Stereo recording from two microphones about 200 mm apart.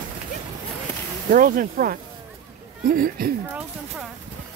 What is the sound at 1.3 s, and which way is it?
Speech, 45° right (ahead or behind).